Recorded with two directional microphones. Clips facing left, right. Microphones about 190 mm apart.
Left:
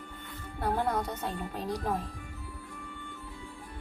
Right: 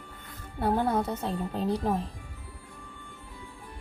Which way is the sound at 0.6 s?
25° right (ahead or behind).